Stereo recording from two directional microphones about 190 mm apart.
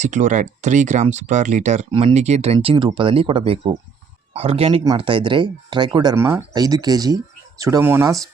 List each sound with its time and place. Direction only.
0.0 s speech: 40° right (ahead or behind); by 8.1 s 10° right (ahead or behind)